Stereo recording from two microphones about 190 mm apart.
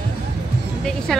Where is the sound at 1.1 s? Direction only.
Centre (ahead or behind).